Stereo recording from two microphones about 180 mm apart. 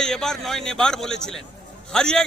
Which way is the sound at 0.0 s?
5° left (ahead or behind).